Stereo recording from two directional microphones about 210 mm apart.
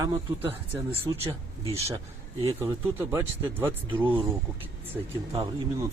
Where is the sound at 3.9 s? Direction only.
25° right (ahead or behind).